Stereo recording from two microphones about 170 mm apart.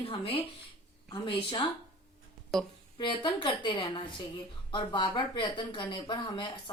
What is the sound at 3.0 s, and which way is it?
Speech, 30° left (ahead or behind).